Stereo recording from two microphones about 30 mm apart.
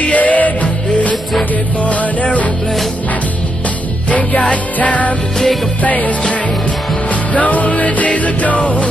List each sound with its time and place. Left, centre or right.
0.0 s music: left
4.1 s music: left
7.3 s music: left